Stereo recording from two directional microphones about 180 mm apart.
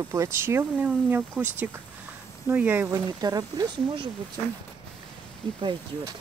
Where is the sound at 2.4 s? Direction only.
10° right (ahead or behind).